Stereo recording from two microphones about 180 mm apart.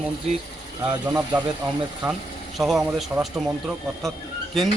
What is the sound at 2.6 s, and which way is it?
Speech, centre (ahead or behind).